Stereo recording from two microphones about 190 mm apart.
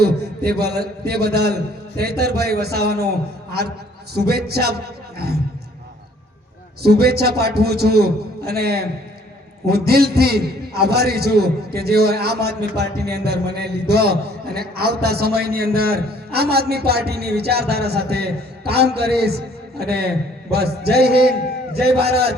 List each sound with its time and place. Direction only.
0.0 s a man's voice: 55° right (ahead or behind)
6.8 s a man's voice: 55° right (ahead or behind)